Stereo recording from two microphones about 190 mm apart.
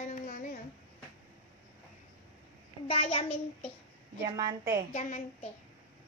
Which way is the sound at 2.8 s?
30° left (ahead or behind).